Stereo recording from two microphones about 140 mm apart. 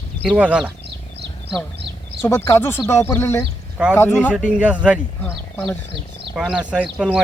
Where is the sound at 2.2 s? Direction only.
20° left (ahead or behind).